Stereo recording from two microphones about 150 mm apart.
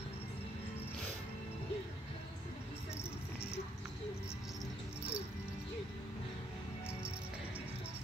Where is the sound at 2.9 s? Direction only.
15° left (ahead or behind).